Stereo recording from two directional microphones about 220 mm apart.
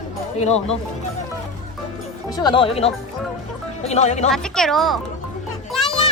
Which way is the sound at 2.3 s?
20° left (ahead or behind).